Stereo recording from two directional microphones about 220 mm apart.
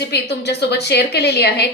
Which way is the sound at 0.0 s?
50° left (ahead or behind).